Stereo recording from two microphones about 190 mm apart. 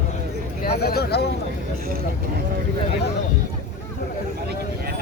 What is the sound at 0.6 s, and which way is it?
Speech, 55° left (ahead or behind).